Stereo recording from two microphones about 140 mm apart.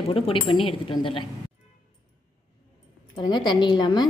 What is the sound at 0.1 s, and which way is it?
A woman's voice, 40° left (ahead or behind).